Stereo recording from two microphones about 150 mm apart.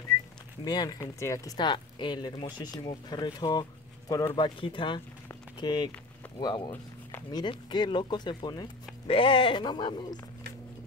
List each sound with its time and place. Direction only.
0.7 s speech: 25° left (ahead or behind)
6.7 s a sound: 15° left (ahead or behind)
7.3 s speech: 30° left (ahead or behind)